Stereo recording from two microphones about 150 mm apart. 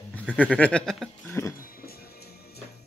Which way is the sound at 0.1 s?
10° left (ahead or behind).